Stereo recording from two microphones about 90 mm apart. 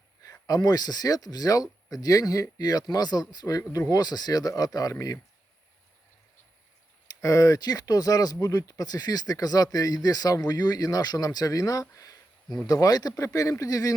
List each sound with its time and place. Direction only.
0.4 s speech: 45° left (ahead or behind)
7.2 s speech: 40° left (ahead or behind)